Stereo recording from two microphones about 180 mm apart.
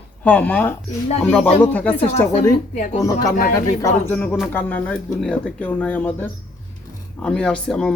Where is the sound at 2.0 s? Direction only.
40° left (ahead or behind).